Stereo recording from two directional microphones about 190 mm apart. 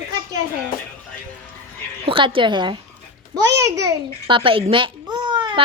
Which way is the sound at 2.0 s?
25° right (ahead or behind).